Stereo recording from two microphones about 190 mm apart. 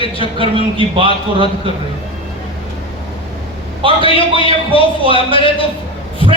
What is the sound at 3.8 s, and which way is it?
A man's voice, 25° right (ahead or behind).